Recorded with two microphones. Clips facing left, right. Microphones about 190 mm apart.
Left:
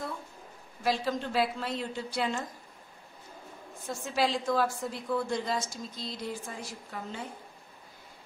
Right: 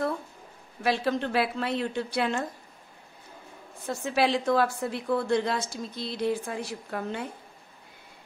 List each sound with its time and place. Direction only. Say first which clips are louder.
0.8 s a woman's voice: right 4 dB; 65° right (ahead or behind)
3.8 s a woman's voice: right 4 dB; 65° right (ahead or behind)